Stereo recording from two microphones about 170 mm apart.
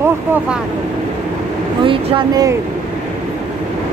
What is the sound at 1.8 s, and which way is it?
Speech, 30° right (ahead or behind).